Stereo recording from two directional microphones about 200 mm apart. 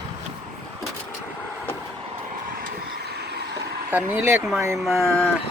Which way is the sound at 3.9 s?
10° right (ahead or behind).